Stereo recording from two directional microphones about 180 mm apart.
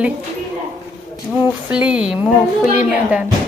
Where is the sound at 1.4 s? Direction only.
5° right (ahead or behind).